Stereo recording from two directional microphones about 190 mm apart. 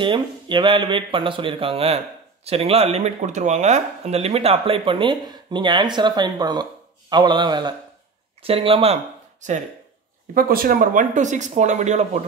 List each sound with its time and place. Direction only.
0.0 s speech: 25° right (ahead or behind)
10.3 s speech: 50° right (ahead or behind)